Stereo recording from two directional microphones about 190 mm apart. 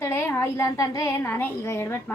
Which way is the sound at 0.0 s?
10° left (ahead or behind).